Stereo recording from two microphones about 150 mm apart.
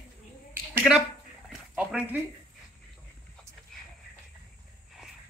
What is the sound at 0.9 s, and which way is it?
Speech, centre (ahead or behind).